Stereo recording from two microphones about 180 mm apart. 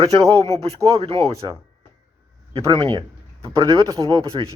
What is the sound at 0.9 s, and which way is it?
Speech, 30° right (ahead or behind).